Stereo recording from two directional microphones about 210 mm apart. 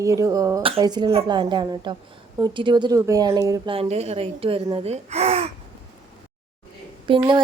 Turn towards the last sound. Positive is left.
turn(degrees=-25)  # may be behind; listen again after turning